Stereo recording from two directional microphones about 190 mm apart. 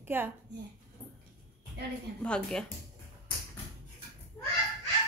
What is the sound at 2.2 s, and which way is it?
Speech, 5° left (ahead or behind).